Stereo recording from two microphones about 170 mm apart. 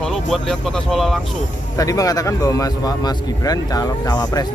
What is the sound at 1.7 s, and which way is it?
Speech, 20° left (ahead or behind).